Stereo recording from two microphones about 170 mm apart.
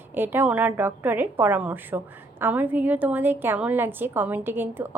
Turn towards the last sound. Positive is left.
turn(degrees=-10)  # may be behind; listen again after turning